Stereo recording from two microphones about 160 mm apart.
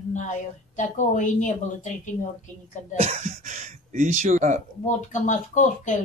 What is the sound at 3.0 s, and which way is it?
Speech, 45° right (ahead or behind).